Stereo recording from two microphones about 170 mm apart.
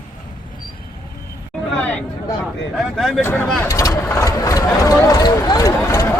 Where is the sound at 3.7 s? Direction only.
20° left (ahead or behind).